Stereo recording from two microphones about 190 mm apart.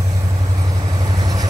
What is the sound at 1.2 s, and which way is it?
Vehicle, 20° right (ahead or behind).